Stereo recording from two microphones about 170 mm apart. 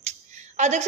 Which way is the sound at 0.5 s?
45° right (ahead or behind).